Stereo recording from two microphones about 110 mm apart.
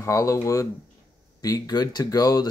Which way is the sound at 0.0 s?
30° left (ahead or behind).